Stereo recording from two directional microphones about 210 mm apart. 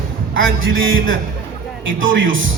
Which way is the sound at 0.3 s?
65° right (ahead or behind).